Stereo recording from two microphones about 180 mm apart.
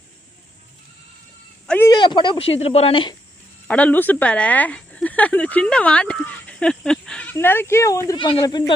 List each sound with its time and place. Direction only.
1.6 s a sound: 10° left (ahead or behind)
1.9 s a woman's voice: 25° left (ahead or behind)
3.7 s speech: 10° left (ahead or behind)